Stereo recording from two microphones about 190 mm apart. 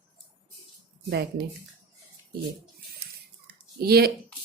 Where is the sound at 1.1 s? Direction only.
60° right (ahead or behind).